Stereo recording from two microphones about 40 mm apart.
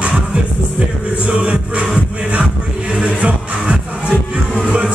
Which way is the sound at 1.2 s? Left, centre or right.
Right.